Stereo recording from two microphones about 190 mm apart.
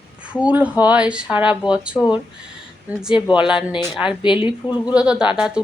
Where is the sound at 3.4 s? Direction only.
25° left (ahead or behind).